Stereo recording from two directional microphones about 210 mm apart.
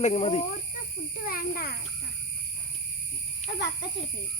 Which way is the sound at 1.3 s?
45° left (ahead or behind).